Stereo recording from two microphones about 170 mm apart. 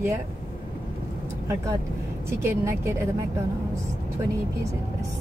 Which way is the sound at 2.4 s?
15° right (ahead or behind).